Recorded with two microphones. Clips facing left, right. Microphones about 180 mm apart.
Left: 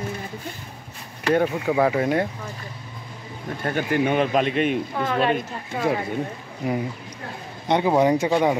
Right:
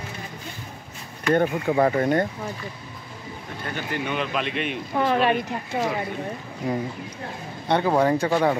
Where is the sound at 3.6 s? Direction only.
50° left (ahead or behind).